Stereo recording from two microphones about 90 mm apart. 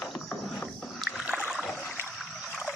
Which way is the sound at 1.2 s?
10° right (ahead or behind).